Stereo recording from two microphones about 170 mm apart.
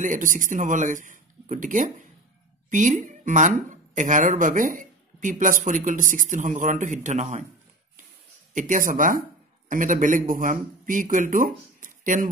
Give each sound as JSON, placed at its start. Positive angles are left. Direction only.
{"t": 0.0, "sound": "speech", "side_deg": -50}
{"t": 8.5, "sound": "speech", "side_deg": -50}